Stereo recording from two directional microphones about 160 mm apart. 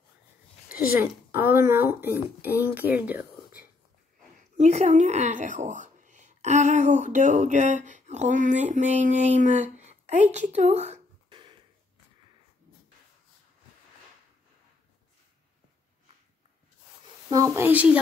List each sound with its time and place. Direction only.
0.9 s speech: 15° right (ahead or behind)
4.4 s speech: 45° right (ahead or behind)
11.2 s a sound: 30° right (ahead or behind)
17.3 s speech: 20° right (ahead or behind)